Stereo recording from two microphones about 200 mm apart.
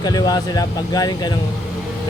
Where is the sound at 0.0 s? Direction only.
20° left (ahead or behind).